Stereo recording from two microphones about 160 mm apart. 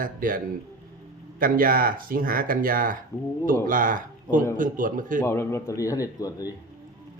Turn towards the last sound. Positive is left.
turn(degrees=20)  # may be behind; listen again after turning